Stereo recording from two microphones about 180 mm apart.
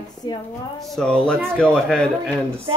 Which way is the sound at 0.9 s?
5° left (ahead or behind).